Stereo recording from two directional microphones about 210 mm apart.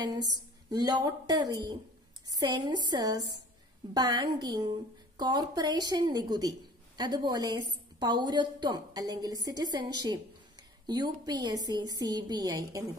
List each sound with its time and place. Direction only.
0.0 s a woman's voice: 20° right (ahead or behind)